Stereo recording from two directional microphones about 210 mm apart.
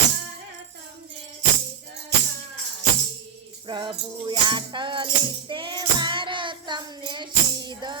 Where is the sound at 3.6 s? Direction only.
20° right (ahead or behind).